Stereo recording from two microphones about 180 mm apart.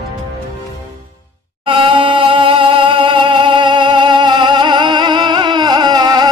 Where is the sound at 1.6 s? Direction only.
30° right (ahead or behind).